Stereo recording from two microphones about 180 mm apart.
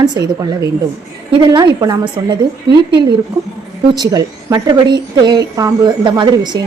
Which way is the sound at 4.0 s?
20° right (ahead or behind).